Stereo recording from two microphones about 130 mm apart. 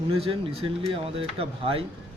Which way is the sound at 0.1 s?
45° right (ahead or behind).